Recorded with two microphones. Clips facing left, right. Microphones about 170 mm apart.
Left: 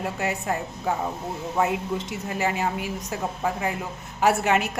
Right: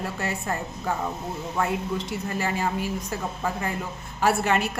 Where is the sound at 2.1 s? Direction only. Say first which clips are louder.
Left 1 dB; 15° left (ahead or behind).